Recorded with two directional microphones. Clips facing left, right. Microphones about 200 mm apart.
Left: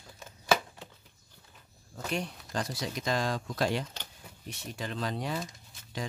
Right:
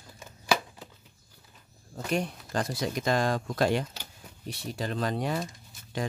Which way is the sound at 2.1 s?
50° right (ahead or behind).